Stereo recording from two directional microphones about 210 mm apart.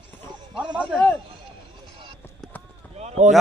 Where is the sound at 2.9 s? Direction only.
30° right (ahead or behind).